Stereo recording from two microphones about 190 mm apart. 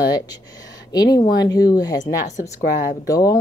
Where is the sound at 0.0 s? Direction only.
20° left (ahead or behind).